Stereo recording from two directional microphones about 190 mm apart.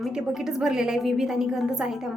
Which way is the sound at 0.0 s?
Centre (ahead or behind).